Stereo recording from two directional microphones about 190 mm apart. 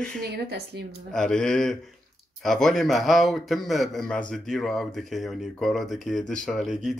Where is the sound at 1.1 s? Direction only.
5° left (ahead or behind).